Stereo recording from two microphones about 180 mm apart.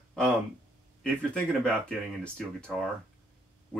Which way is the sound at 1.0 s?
5° left (ahead or behind).